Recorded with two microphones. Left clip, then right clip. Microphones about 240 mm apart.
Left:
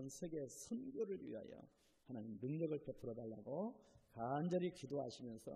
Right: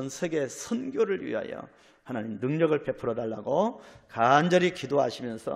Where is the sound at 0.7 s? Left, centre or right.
Right.